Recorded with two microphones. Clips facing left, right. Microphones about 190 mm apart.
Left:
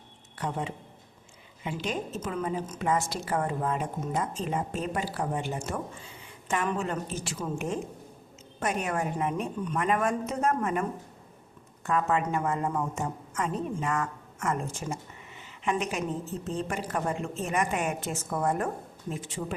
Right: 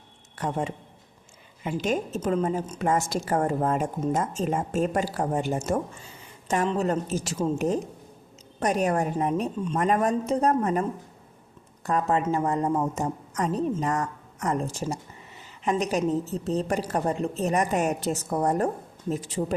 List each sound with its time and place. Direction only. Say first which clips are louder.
0.3 s a woman's voice: right 4 dB; 45° right (ahead or behind)
9.4 s speech: right 4 dB; 25° right (ahead or behind)
9.7 s a woman's voice: right 4 dB; 40° right (ahead or behind)
11.9 s a woman's voice: right 2 dB; 35° right (ahead or behind)
12.2 s speech: right 4 dB; 25° right (ahead or behind)
12.5 s a woman's voice: right 4 dB; 35° right (ahead or behind)